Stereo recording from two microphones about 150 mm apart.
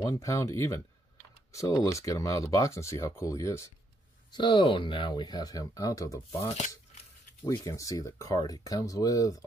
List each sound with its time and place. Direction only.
0.0 s speech: 20° left (ahead or behind)
4.3 s speech: 30° left (ahead or behind)